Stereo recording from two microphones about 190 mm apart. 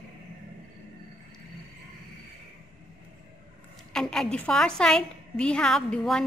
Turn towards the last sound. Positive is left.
turn(degrees=5)  # may be behind; listen again after turning